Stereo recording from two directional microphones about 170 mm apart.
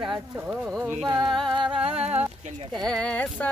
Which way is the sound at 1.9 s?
35° right (ahead or behind).